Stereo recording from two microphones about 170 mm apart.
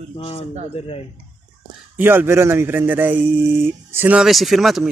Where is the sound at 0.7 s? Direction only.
35° left (ahead or behind).